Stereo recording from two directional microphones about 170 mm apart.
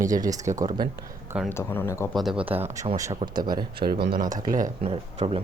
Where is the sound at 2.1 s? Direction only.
Centre (ahead or behind).